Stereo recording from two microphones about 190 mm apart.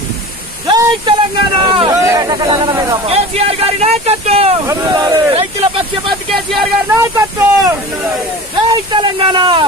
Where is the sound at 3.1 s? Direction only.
30° right (ahead or behind).